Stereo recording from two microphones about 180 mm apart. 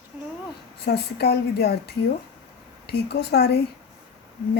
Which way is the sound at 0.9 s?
65° left (ahead or behind).